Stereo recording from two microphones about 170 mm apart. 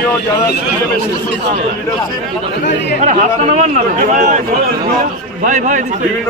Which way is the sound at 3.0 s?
45° right (ahead or behind).